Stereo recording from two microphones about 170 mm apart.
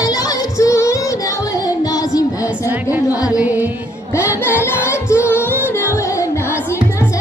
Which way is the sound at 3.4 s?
10° right (ahead or behind).